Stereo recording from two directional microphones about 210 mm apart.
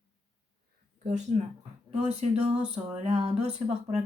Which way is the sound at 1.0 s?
35° right (ahead or behind).